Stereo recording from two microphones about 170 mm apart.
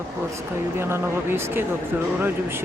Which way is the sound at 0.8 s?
15° right (ahead or behind).